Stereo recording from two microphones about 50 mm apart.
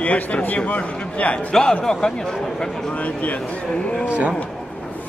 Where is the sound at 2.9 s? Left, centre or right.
Left.